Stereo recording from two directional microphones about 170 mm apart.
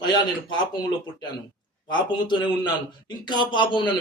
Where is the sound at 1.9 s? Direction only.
25° left (ahead or behind).